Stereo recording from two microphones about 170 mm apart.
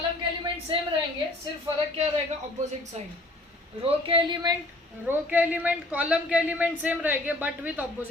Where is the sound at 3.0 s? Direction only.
40° right (ahead or behind).